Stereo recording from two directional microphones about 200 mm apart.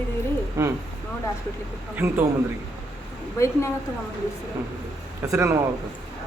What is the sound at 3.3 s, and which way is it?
Speech, 15° left (ahead or behind).